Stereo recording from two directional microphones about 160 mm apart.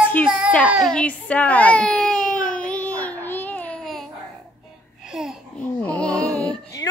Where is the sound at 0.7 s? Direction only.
Centre (ahead or behind).